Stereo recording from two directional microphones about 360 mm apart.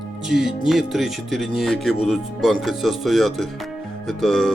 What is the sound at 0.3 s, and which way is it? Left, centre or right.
Speech, centre.